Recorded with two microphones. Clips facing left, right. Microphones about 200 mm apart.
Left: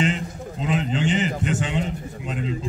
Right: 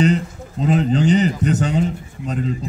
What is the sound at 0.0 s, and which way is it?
A man's voice, 40° right (ahead or behind).